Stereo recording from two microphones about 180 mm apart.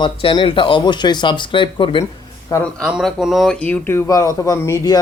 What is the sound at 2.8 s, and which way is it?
Speech, 5° right (ahead or behind).